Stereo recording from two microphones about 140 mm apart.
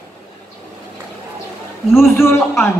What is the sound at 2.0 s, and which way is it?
Speech, 20° left (ahead or behind).